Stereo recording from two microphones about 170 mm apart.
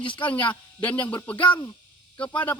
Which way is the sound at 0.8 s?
10° left (ahead or behind).